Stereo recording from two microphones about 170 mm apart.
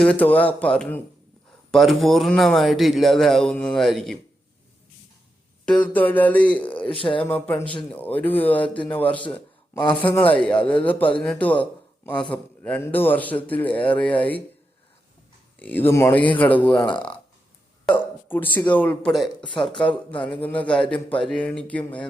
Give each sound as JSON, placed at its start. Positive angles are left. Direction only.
{"t": 0.0, "sound": "a man's voice", "side_deg": 5}
{"t": 5.6, "sound": "a man's voice", "side_deg": 5}
{"t": 6.8, "sound": "speech", "side_deg": 30}
{"t": 7.3, "sound": "a man's voice", "side_deg": 10}
{"t": 15.5, "sound": "a man's voice", "side_deg": 10}
{"t": 17.8, "sound": "speech", "side_deg": 10}
{"t": 19.4, "sound": "speech", "side_deg": 30}
{"t": 20.2, "sound": "a man's voice", "side_deg": 10}